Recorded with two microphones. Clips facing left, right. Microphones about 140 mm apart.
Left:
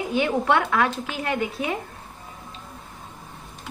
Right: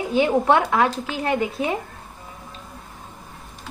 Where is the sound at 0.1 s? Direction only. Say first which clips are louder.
Right 4 dB; 30° right (ahead or behind).